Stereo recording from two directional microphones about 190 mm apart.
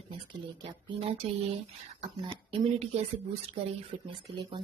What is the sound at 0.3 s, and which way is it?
Speech, 25° right (ahead or behind).